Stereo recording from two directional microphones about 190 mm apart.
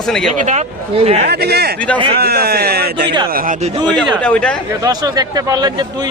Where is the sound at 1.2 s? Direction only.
60° right (ahead or behind).